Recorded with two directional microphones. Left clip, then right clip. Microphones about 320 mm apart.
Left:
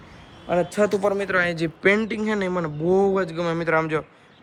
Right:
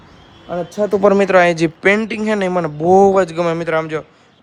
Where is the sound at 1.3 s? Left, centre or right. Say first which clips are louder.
Right 10 dB; centre.